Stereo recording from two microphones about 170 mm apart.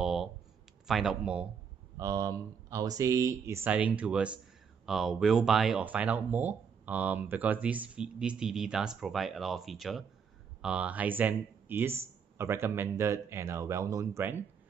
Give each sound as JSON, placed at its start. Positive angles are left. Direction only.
{"t": 0.0, "sound": "a sound", "side_deg": 0}
{"t": 0.8, "sound": "speech", "side_deg": 0}
{"t": 2.0, "sound": "speech", "side_deg": -20}